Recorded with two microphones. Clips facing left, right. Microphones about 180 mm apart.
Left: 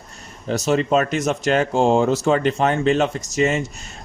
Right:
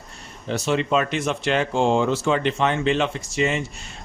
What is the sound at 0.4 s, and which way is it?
A man's voice, 40° left (ahead or behind).